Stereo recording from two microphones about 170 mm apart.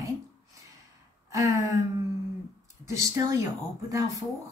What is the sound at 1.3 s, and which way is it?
Speech, 20° right (ahead or behind).